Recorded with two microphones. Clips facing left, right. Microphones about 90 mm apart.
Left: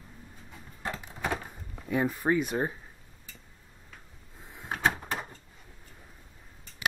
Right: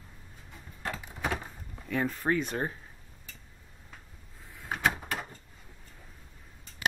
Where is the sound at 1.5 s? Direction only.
15° left (ahead or behind).